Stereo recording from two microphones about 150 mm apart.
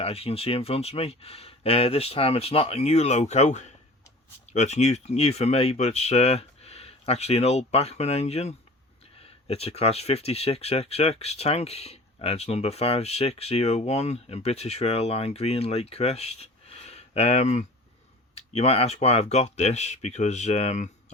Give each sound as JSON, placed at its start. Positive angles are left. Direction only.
{"t": 0.0, "sound": "speech", "side_deg": 40}